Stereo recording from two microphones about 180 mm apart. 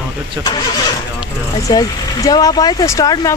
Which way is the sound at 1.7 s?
20° left (ahead or behind).